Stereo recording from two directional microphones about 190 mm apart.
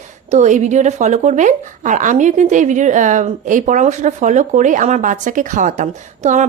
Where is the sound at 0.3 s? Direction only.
40° right (ahead or behind).